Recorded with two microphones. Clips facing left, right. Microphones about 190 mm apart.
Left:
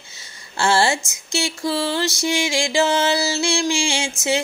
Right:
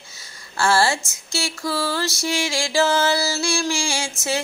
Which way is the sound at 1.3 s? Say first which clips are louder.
Left 3 dB; 20° left (ahead or behind).